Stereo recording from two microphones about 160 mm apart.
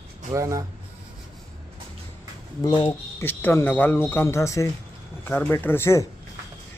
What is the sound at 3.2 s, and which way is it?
Speech, 10° left (ahead or behind).